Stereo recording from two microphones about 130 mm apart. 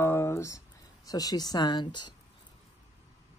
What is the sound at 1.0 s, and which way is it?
Speech, 30° left (ahead or behind).